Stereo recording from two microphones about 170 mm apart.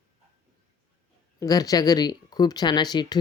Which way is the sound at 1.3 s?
20° left (ahead or behind).